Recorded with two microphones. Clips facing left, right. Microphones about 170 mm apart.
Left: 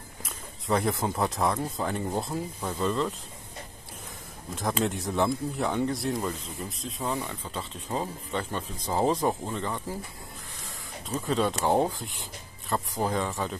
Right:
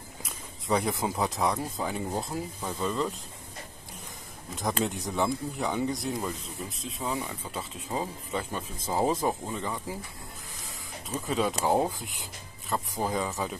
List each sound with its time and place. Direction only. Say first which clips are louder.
0.2 s speech: left 3 dB; centre (ahead or behind)
4.6 s speech: left 1 dB; centre (ahead or behind)
11.1 s speech: left 2 dB; 5° right (ahead or behind)